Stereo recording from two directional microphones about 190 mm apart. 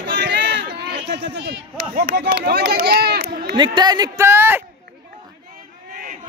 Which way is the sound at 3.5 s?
25° right (ahead or behind).